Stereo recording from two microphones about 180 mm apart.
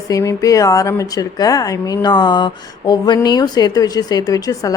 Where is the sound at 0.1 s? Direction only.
20° left (ahead or behind).